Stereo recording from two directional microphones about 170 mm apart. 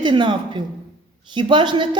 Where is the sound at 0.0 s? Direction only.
25° right (ahead or behind).